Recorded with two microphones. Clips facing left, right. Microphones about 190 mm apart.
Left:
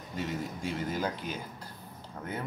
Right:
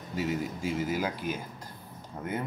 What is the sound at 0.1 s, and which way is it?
Speech, 5° right (ahead or behind).